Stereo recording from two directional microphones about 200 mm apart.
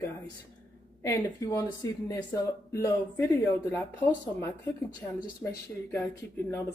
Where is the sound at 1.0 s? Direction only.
15° left (ahead or behind).